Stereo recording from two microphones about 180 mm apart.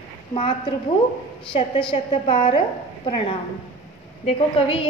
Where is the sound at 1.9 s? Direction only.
30° left (ahead or behind).